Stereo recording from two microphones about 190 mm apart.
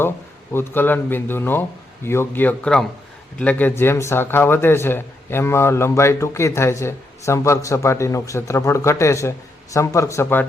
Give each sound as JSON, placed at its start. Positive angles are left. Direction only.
{"t": 0.5, "sound": "speech", "side_deg": 10}